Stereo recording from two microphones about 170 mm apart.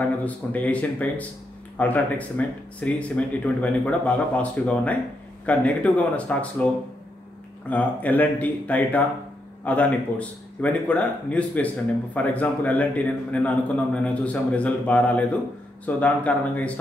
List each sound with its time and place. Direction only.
0.0 s a man's voice: 10° left (ahead or behind)
7.7 s a man's voice: 10° left (ahead or behind)